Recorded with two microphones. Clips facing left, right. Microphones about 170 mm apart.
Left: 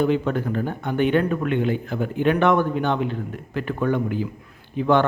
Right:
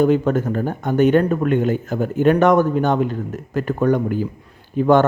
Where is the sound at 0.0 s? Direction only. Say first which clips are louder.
Right 5 dB; 45° right (ahead or behind).